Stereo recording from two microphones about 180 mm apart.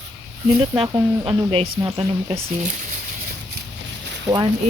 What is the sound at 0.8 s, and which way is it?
Speech, 20° right (ahead or behind).